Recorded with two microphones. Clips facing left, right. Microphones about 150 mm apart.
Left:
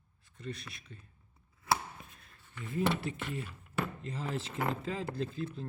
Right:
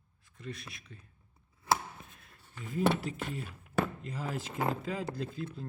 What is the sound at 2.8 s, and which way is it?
Speech, 45° right (ahead or behind).